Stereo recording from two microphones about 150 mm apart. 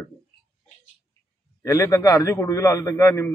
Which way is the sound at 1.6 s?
20° left (ahead or behind).